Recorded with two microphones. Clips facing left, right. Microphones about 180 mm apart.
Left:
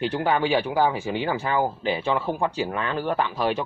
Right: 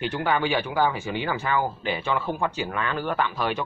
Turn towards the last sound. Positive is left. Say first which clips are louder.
# left 2 dB
turn(degrees=30)  # may be behind; listen again after turning